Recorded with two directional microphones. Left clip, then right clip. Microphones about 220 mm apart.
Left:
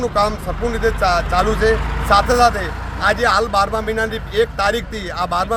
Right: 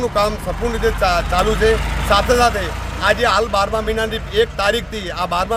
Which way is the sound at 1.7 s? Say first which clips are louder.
Right 1 dB; 50° right (ahead or behind).